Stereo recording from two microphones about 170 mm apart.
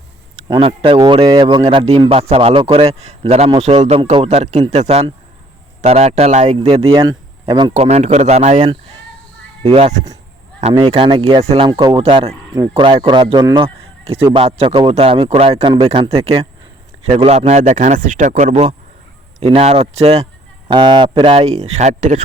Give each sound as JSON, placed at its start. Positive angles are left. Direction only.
{"t": 0.4, "sound": "a man's voice", "side_deg": -25}
{"t": 1.6, "sound": "a man's voice", "side_deg": -35}
{"t": 7.7, "sound": "a man's voice", "side_deg": -40}
{"t": 8.6, "sound": "a man's voice", "side_deg": -30}
{"t": 13.6, "sound": "a sound", "side_deg": -35}
{"t": 14.3, "sound": "a man's voice", "side_deg": -35}
{"t": 20.7, "sound": "a man's voice", "side_deg": -25}